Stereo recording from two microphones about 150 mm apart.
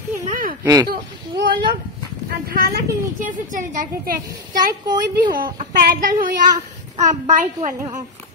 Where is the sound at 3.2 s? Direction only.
60° right (ahead or behind).